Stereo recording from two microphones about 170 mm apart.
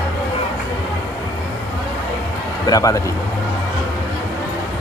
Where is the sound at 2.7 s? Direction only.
20° left (ahead or behind).